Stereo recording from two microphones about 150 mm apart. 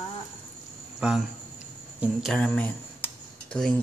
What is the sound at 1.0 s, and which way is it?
A woman's voice, 5° right (ahead or behind).